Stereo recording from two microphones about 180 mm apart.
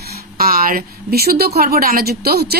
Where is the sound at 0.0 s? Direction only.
55° right (ahead or behind).